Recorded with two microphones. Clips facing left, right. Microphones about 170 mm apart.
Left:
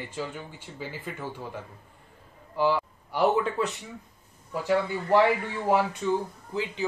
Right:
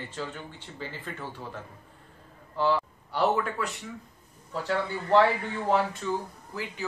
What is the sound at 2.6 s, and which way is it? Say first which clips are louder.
Speech: left 1 dB; 10° left (ahead or behind).